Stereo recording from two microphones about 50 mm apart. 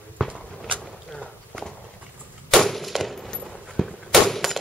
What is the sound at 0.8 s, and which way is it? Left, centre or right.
Walk, centre.